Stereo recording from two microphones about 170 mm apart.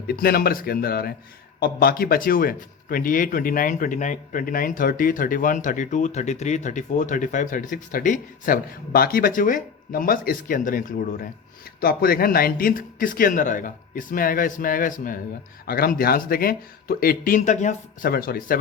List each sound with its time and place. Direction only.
0.1 s speech: 65° left (ahead or behind)